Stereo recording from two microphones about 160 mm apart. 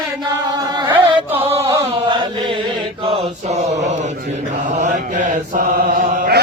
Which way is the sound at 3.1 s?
45° right (ahead or behind).